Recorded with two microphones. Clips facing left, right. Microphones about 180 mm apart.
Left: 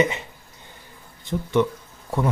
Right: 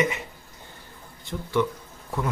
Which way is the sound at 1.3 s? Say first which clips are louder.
Left 4 dB; 20° left (ahead or behind).